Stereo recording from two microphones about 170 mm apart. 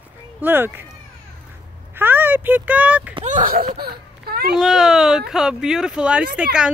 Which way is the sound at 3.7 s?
65° right (ahead or behind).